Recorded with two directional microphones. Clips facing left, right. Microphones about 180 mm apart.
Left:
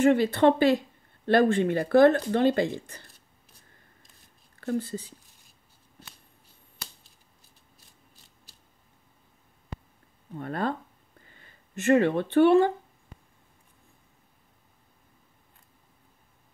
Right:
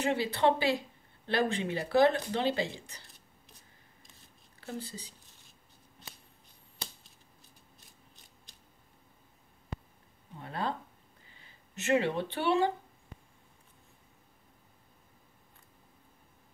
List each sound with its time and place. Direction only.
0.0 s speech: 50° left (ahead or behind)
4.6 s speech: 50° left (ahead or behind)
10.4 s speech: 50° left (ahead or behind)